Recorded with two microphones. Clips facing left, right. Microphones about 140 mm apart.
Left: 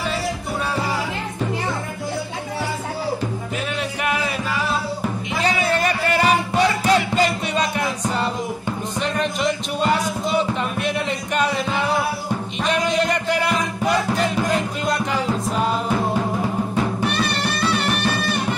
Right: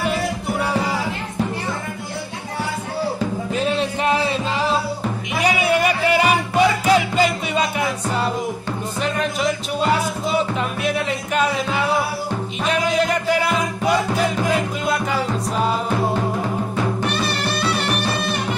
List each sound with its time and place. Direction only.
3.5 s music: 30° right (ahead or behind)
5.4 s music: 10° right (ahead or behind)